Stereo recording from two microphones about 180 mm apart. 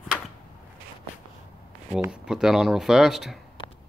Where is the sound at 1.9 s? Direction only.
5° right (ahead or behind).